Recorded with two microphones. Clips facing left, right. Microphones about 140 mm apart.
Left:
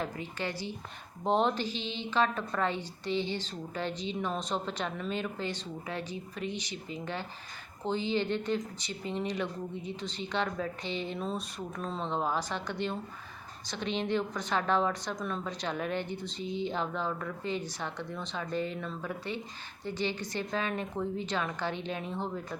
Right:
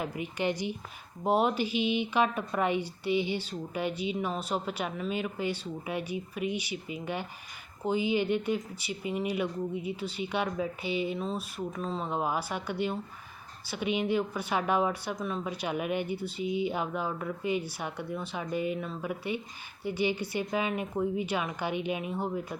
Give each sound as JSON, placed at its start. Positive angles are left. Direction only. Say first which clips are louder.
{"t": 0.0, "sound": "speech", "louder": "right 4 dB", "side_deg": -15}